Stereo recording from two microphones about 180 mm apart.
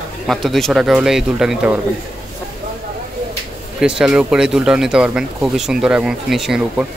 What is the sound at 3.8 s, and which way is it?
Speech, 5° right (ahead or behind).